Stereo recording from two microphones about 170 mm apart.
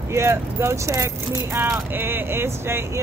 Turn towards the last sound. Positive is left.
turn(degrees=-15)  # may be behind; listen again after turning